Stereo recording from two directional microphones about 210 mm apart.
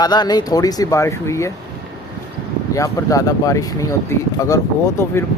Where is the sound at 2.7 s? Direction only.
15° left (ahead or behind).